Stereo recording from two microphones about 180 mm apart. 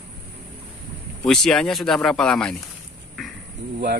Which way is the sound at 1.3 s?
5° left (ahead or behind).